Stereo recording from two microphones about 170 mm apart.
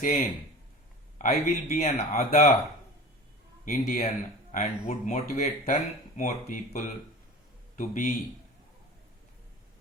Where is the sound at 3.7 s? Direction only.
50° left (ahead or behind).